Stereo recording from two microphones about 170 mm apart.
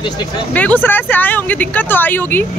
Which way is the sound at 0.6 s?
10° left (ahead or behind).